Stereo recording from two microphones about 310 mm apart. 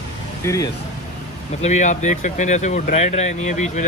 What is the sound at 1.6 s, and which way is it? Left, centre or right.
Speech, left.